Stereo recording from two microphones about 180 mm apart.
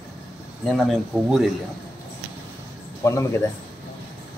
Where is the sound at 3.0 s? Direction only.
15° left (ahead or behind).